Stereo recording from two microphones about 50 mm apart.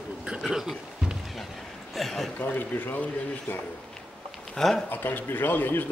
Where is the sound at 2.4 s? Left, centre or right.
Left.